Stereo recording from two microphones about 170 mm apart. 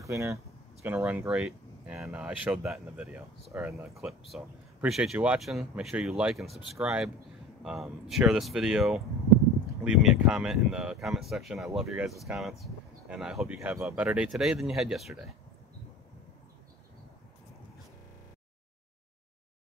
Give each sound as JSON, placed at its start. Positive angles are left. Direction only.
{"t": 0.0, "sound": "speech", "side_deg": -20}
{"t": 3.9, "sound": "speech", "side_deg": 0}